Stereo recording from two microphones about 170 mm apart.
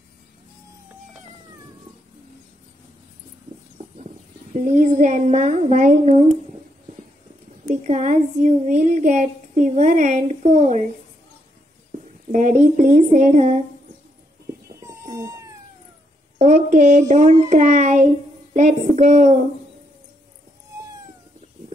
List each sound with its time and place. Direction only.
4.6 s a woman's voice: 45° right (ahead or behind)
7.7 s a woman's voice: 45° right (ahead or behind)
12.3 s a woman's voice: 50° right (ahead or behind)
14.8 s cat: 20° right (ahead or behind)
16.3 s a sound: 45° right (ahead or behind)
17.1 s a woman's voice: 45° right (ahead or behind)